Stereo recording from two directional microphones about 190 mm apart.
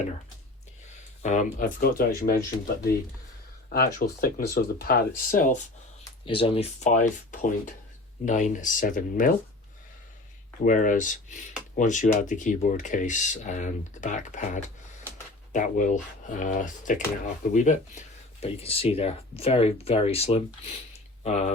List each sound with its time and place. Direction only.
1.2 s speech: 40° left (ahead or behind)
6.1 s speech: 25° left (ahead or behind); by 9.3 s 45° left (ahead or behind)
10.6 s speech: 45° left (ahead or behind)